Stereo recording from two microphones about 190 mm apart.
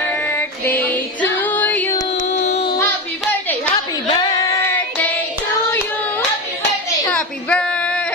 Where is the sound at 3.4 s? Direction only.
15° left (ahead or behind).